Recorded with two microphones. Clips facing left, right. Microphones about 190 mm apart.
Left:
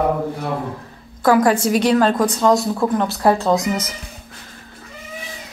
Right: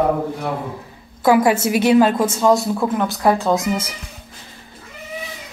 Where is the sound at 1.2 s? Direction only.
5° right (ahead or behind).